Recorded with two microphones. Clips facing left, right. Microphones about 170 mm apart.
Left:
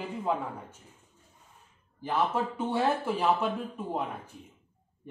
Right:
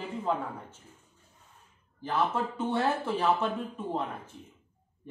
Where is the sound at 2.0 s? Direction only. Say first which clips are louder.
Left 1 dB; 10° left (ahead or behind).